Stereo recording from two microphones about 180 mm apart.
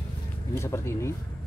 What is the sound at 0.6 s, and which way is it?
Speech, 15° left (ahead or behind).